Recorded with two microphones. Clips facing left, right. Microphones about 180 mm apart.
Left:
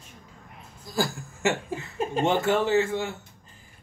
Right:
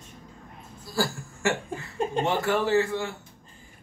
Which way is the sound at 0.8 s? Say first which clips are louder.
Even; 20° left (ahead or behind).